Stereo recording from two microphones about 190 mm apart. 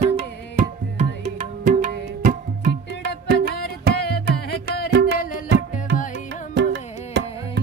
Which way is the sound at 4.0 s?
55° left (ahead or behind).